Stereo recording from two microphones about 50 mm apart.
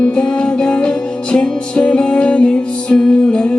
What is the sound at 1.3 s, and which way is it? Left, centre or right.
Music, left.